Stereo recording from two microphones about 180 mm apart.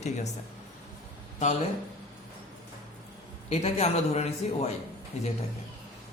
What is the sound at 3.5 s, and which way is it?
A man's voice, 35° left (ahead or behind).